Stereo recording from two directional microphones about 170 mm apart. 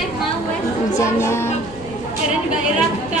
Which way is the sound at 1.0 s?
15° left (ahead or behind).